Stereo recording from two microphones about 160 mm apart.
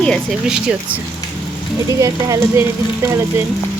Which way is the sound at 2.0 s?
20° right (ahead or behind).